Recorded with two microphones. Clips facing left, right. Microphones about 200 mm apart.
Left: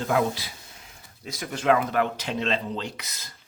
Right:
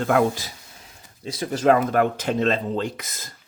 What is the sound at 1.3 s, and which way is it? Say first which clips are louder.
Speech: right 4 dB; 30° right (ahead or behind).